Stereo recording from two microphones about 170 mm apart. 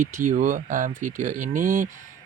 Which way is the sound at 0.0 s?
45° right (ahead or behind).